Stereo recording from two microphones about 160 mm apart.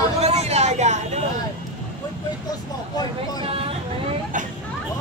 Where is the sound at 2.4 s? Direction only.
25° left (ahead or behind).